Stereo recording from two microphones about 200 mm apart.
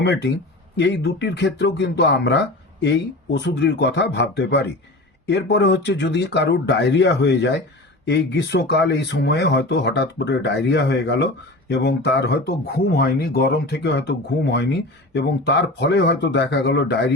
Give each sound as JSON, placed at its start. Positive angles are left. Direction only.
{"t": 0.0, "sound": "speech", "side_deg": 60}